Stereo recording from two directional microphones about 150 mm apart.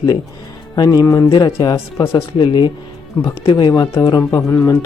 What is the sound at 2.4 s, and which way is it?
Speech, 35° left (ahead or behind).